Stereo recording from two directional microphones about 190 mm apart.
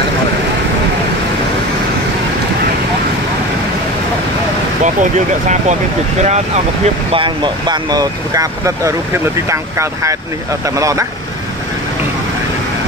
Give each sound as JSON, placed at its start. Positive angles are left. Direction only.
{"t": 4.8, "sound": "speech", "side_deg": -40}